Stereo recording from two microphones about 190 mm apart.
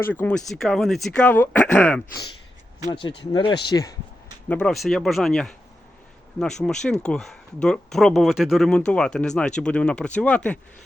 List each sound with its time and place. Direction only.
0.0 s speech: 10° left (ahead or behind)
3.2 s speech: 25° left (ahead or behind)
4.4 s speech: 5° left (ahead or behind)